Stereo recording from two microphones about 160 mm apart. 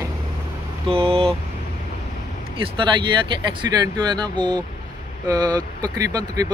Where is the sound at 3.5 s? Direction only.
25° right (ahead or behind).